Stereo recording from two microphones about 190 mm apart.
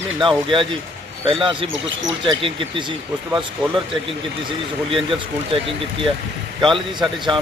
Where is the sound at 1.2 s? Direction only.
30° right (ahead or behind).